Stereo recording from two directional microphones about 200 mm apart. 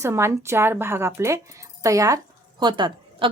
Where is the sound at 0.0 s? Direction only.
15° right (ahead or behind).